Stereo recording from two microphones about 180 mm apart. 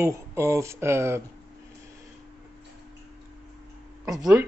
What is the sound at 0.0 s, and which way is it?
A man's voice, 15° right (ahead or behind).